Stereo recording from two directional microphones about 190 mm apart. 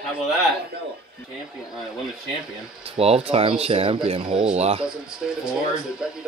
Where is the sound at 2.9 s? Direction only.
30° right (ahead or behind).